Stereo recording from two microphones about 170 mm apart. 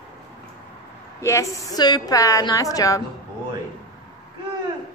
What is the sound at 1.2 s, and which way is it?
A woman's voice, 15° left (ahead or behind).